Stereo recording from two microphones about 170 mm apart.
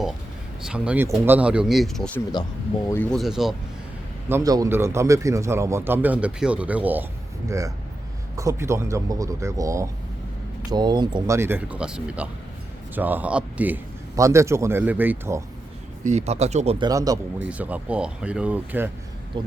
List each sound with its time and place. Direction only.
0.6 s speech: 5° right (ahead or behind); by 3.1 s 15° left (ahead or behind)
3.1 s speech: centre (ahead or behind)
4.3 s a man's voice: 20° right (ahead or behind)
16.0 s speech: 40° right (ahead or behind)
16.7 s a man's voice: 25° right (ahead or behind)
17.4 s a man's voice: 10° right (ahead or behind)